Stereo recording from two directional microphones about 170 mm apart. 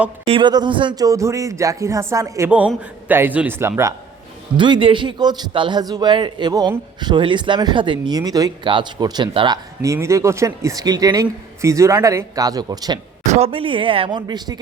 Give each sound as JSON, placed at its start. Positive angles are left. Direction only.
{"t": 0.3, "sound": "a man's voice", "side_deg": -30}
{"t": 4.5, "sound": "a man's voice", "side_deg": -30}
{"t": 9.8, "sound": "a man's voice", "side_deg": -15}
{"t": 13.2, "sound": "a woman's voice", "side_deg": -40}